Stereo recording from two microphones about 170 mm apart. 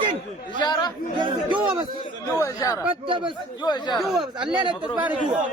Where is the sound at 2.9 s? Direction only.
30° right (ahead or behind).